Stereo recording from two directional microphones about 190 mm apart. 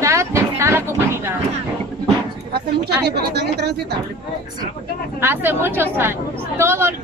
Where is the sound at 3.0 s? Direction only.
60° right (ahead or behind).